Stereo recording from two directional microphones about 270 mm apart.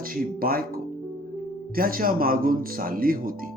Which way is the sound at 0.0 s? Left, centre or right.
Right.